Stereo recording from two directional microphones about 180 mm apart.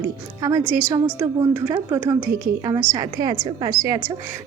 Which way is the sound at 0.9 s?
20° right (ahead or behind).